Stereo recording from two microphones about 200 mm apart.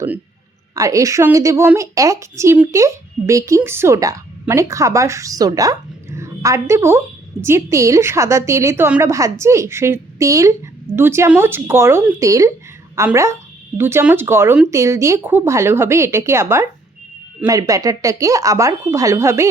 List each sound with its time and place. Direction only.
0.8 s a woman's voice: 15° right (ahead or behind)